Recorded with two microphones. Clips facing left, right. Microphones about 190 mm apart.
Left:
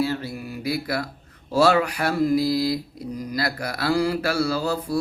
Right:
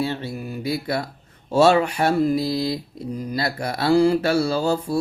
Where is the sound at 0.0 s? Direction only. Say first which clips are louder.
Even; 25° right (ahead or behind).